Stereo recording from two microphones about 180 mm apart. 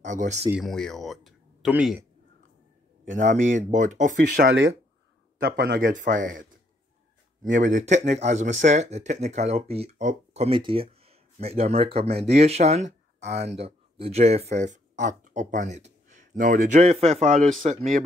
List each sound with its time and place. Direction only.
0.0 s speech: 40° right (ahead or behind)
0.6 s speech: centre (ahead or behind)
3.1 s speech: 45° right (ahead or behind)
5.4 s speech: 55° right (ahead or behind)
7.5 s speech: 45° right (ahead or behind)